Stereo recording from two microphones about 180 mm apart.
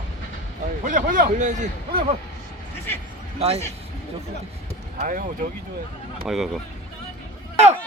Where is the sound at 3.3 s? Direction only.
35° right (ahead or behind).